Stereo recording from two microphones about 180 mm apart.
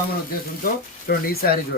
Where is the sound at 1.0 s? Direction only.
55° left (ahead or behind).